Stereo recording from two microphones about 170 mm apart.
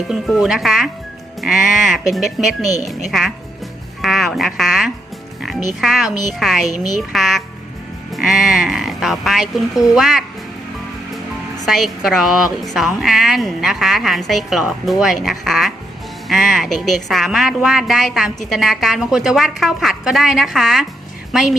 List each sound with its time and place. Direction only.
0.1 s a woman's voice: centre (ahead or behind)
11.6 s a woman's voice: centre (ahead or behind)